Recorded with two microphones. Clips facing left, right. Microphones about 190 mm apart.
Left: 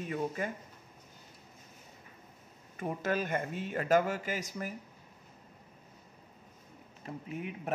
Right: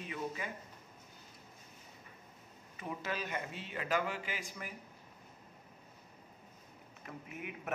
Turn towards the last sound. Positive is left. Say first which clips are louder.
# left 5 dB
turn(degrees=30)  # may be behind; listen again after turning